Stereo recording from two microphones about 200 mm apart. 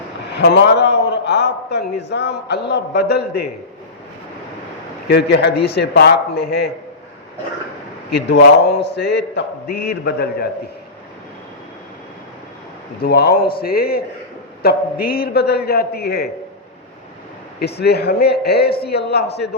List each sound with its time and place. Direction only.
0.3 s a man's voice: 55° left (ahead or behind)
5.0 s a man's voice: 55° left (ahead or behind)
8.3 s a man's voice: 55° left (ahead or behind)
13.0 s a man's voice: 50° left (ahead or behind)
17.6 s a man's voice: 55° left (ahead or behind)